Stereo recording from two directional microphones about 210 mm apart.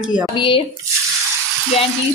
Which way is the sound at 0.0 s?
5° right (ahead or behind).